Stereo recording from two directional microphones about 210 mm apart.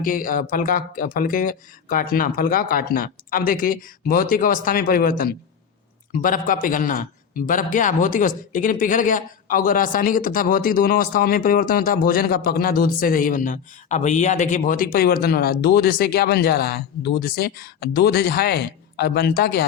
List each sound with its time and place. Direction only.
0.0 s a man's voice: 40° left (ahead or behind)